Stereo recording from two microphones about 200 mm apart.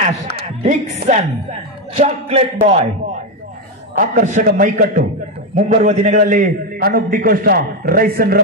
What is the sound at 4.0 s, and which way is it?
Speech, 40° right (ahead or behind).